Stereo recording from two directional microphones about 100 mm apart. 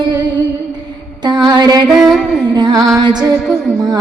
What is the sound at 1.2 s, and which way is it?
Music, 45° right (ahead or behind).